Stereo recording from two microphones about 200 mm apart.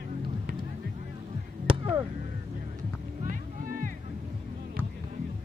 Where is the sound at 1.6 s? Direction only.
25° right (ahead or behind).